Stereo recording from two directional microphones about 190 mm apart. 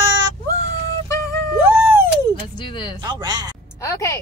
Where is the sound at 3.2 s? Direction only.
20° right (ahead or behind).